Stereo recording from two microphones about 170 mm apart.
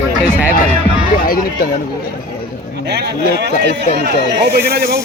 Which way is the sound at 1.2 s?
60° left (ahead or behind).